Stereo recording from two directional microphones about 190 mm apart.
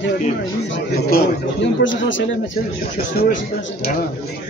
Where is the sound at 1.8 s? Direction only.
75° left (ahead or behind).